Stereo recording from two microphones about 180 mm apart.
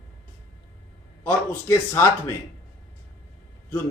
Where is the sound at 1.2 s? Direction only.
15° left (ahead or behind).